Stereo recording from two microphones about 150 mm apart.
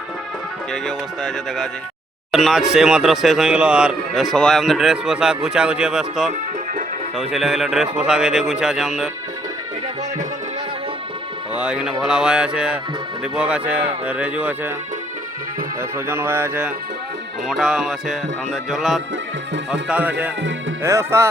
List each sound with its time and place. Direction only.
0.7 s speech: centre (ahead or behind)
11.5 s speech: 5° right (ahead or behind)
16.0 s speech: 15° right (ahead or behind)
17.5 s speech: 5° right (ahead or behind)